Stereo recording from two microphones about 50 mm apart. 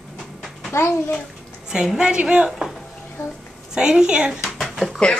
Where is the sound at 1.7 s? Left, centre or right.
Centre.